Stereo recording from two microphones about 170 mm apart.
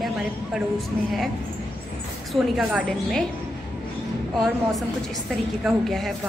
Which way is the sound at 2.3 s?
Centre (ahead or behind).